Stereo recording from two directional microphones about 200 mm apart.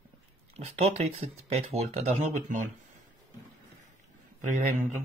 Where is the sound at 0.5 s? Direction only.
35° right (ahead or behind).